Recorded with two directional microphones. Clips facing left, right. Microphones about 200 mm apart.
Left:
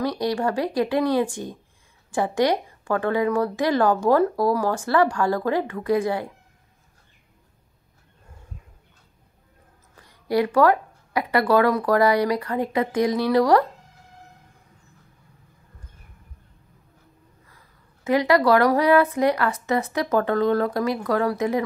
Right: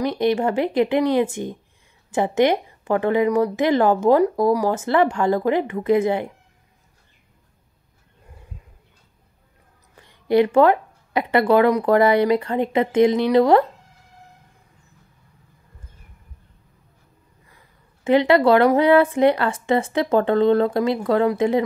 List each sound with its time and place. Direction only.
0.0 s speech: 20° right (ahead or behind)
10.0 s speech: 25° right (ahead or behind)
18.0 s speech: 25° right (ahead or behind)